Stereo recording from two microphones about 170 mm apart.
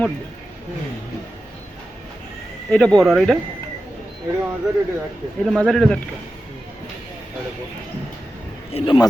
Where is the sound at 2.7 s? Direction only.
5° left (ahead or behind).